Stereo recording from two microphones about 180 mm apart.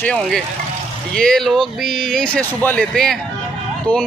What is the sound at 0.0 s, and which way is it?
Speech, 5° left (ahead or behind).